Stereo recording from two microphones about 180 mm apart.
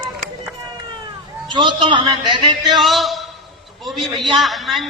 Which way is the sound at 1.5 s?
25° right (ahead or behind).